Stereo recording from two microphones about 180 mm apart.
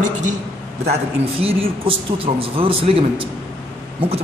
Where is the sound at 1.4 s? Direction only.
30° right (ahead or behind).